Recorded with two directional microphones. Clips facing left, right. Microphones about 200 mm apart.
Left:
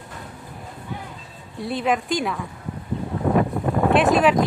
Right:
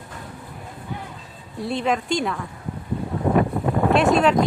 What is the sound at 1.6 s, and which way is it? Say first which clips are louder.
Speech: even; centre (ahead or behind).